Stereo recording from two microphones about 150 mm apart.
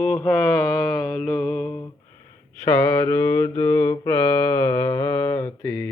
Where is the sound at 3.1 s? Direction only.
15° left (ahead or behind).